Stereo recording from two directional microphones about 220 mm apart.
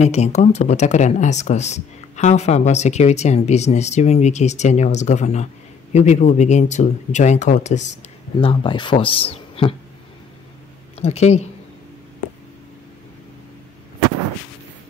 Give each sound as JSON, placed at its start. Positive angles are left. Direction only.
{"t": 0.0, "sound": "speech", "side_deg": 30}
{"t": 11.0, "sound": "speech", "side_deg": 30}